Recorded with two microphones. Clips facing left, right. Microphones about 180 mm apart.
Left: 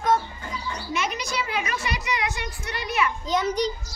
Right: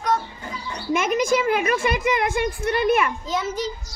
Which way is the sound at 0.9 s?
50° right (ahead or behind).